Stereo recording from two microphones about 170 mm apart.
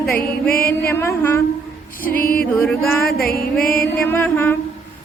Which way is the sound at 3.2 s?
60° left (ahead or behind).